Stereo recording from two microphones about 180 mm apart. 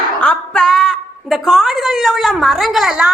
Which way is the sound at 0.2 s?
5° left (ahead or behind).